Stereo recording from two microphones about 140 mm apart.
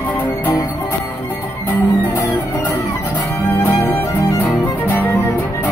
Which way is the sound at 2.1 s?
15° left (ahead or behind).